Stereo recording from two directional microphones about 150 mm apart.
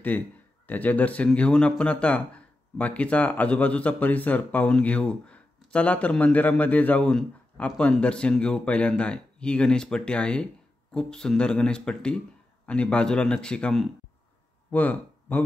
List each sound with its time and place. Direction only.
0.7 s speech: 10° left (ahead or behind)